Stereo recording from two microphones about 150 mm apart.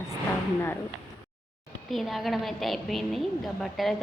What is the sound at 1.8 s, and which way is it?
A woman's voice, centre (ahead or behind).